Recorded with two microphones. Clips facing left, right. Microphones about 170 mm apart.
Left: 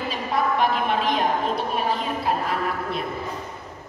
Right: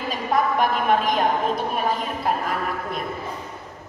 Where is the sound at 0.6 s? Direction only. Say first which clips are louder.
Right 2 dB; 45° right (ahead or behind).